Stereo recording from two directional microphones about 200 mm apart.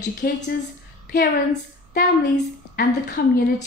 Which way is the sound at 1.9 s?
45° left (ahead or behind).